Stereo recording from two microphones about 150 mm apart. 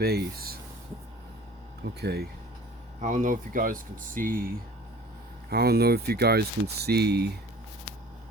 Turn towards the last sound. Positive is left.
turn(degrees=-90)